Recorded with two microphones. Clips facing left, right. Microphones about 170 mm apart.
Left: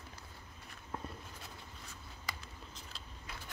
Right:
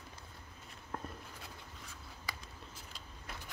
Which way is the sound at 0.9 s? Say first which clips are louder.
Even; centre (ahead or behind).